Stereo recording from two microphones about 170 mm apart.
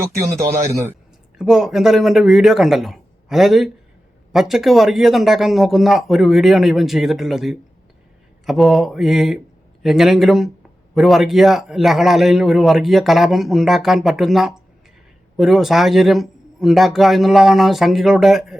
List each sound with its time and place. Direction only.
0.3 s speech: 15° right (ahead or behind)
1.4 s a man's voice: 5° right (ahead or behind)